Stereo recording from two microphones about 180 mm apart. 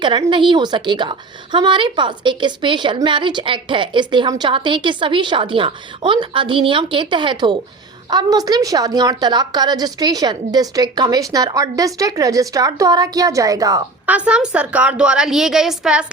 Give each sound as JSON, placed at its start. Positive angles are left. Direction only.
{"t": 0.0, "sound": "a woman's voice", "side_deg": -25}
{"t": 14.1, "sound": "a woman's voice", "side_deg": -5}